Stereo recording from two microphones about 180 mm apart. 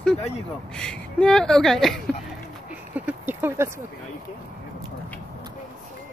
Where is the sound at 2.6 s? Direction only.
10° right (ahead or behind).